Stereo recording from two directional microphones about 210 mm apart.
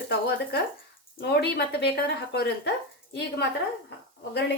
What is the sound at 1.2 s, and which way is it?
A woman's voice, 50° left (ahead or behind).